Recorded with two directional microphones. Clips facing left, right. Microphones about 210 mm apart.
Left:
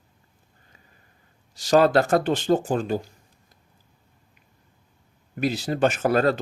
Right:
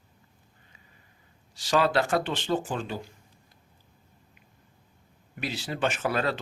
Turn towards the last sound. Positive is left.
turn(degrees=45)  # may be behind; listen again after turning